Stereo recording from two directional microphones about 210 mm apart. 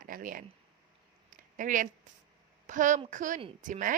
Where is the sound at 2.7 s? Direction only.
35° right (ahead or behind).